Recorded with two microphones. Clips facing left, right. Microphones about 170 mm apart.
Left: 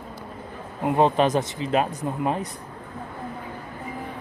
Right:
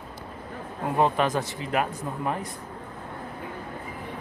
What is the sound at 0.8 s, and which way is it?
Speech, 25° left (ahead or behind).